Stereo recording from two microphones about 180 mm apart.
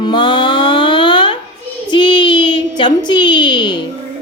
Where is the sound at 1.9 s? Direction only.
25° left (ahead or behind).